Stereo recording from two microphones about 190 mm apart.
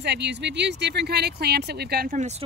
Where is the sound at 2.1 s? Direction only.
35° right (ahead or behind).